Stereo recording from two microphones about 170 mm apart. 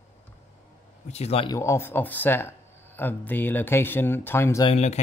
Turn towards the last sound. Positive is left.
turn(degrees=35)  # may be behind; listen again after turning